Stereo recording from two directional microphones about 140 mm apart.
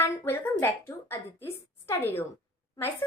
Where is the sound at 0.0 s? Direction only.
15° left (ahead or behind).